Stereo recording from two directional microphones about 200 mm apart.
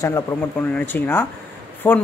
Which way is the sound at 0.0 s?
10° left (ahead or behind).